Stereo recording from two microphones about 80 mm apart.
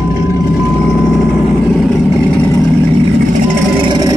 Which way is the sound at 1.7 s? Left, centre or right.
Centre.